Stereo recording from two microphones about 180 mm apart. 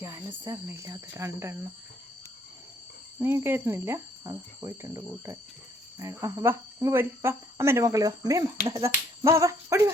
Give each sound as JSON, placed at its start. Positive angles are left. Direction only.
{"t": 0.4, "sound": "speech", "side_deg": -15}
{"t": 3.2, "sound": "speech", "side_deg": -15}